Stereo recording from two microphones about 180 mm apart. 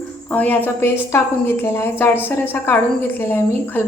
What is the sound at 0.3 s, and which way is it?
A woman's voice, 10° left (ahead or behind).